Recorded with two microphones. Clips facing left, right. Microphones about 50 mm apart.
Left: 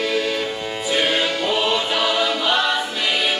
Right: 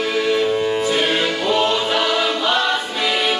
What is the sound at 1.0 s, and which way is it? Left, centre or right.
Music, right.